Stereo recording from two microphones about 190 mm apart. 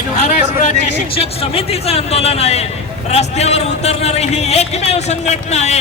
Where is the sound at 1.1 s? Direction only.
30° left (ahead or behind).